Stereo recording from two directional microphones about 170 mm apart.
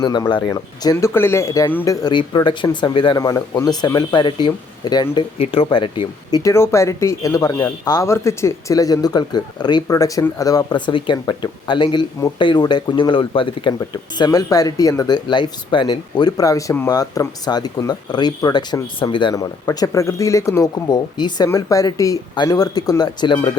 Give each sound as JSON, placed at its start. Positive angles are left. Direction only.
{"t": 0.0, "sound": "speech", "side_deg": 25}
{"t": 13.7, "sound": "speech", "side_deg": 20}